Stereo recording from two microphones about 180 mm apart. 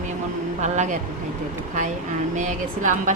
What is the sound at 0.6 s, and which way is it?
Speech, 40° right (ahead or behind).